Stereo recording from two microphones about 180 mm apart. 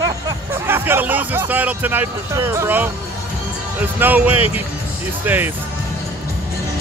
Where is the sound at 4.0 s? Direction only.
10° right (ahead or behind).